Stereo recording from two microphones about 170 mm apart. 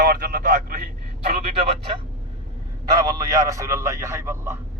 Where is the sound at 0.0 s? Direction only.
65° right (ahead or behind).